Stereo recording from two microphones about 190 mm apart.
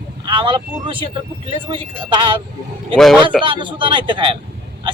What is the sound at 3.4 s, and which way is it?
Speech, 25° right (ahead or behind).